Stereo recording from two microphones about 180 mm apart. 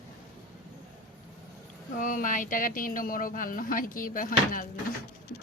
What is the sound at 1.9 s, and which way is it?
Speech, 50° left (ahead or behind).